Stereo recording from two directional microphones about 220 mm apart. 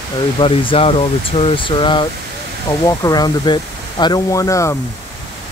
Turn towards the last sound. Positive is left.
turn(degrees=15)  # may be behind; listen again after turning